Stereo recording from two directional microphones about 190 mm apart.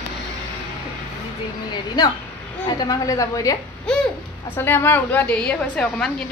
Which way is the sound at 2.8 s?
20° left (ahead or behind).